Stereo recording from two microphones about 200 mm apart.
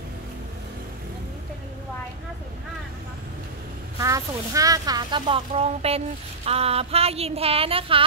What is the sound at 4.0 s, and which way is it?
Speech, 15° right (ahead or behind).